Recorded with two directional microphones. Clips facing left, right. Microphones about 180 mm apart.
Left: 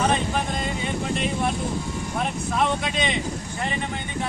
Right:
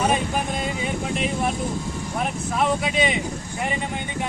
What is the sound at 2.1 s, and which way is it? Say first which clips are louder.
Speech: even; 5° right (ahead or behind).